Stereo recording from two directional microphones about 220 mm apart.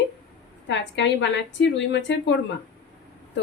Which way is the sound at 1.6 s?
55° left (ahead or behind).